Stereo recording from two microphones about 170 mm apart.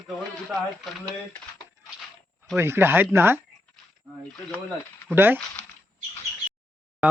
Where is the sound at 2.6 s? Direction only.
15° right (ahead or behind).